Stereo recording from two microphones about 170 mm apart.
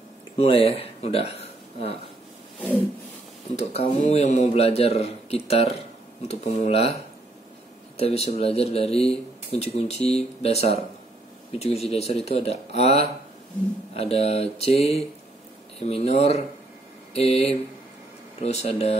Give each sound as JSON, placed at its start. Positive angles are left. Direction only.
{"t": 0.4, "sound": "a man's voice", "side_deg": 35}
{"t": 3.5, "sound": "a man's voice", "side_deg": 40}
{"t": 8.0, "sound": "a man's voice", "side_deg": 35}